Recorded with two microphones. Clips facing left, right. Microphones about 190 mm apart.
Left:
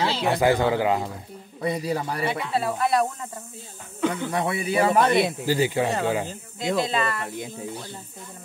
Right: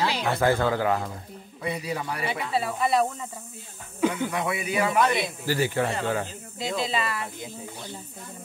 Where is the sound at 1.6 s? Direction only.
35° left (ahead or behind).